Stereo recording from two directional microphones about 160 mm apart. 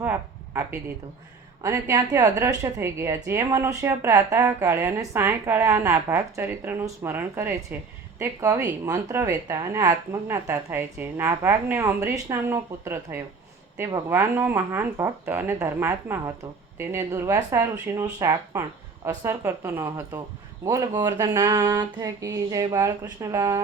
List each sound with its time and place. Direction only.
0.0 s a woman's voice: 15° right (ahead or behind)